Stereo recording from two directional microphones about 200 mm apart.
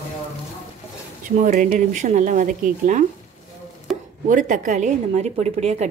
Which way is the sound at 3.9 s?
Centre (ahead or behind).